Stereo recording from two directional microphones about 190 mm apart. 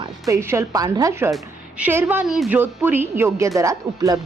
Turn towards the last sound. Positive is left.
turn(degrees=-20)  # may be behind; listen again after turning